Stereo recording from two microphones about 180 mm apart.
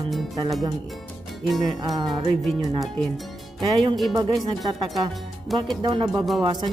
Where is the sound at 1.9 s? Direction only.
25° right (ahead or behind).